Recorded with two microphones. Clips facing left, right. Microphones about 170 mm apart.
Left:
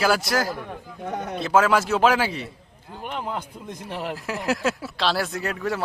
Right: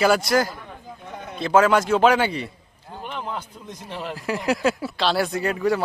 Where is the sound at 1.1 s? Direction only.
75° left (ahead or behind).